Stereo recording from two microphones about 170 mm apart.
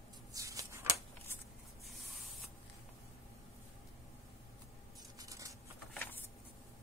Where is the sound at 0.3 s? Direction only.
20° right (ahead or behind).